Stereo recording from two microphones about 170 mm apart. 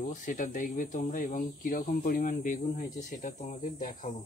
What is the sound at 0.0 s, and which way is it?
Speech, 55° left (ahead or behind).